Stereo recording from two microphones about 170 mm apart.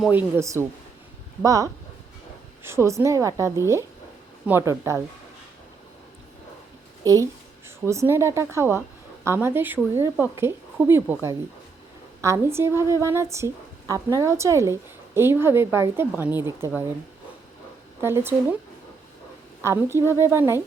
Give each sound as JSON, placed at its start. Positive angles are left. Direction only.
{"t": 0.0, "sound": "a woman's voice", "side_deg": -10}
{"t": 7.0, "sound": "a woman's voice", "side_deg": -20}
{"t": 18.0, "sound": "a woman's voice", "side_deg": -15}
{"t": 19.6, "sound": "a woman's voice", "side_deg": -15}